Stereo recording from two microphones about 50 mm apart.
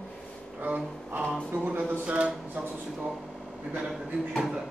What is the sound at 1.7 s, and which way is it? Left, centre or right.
Speech, right.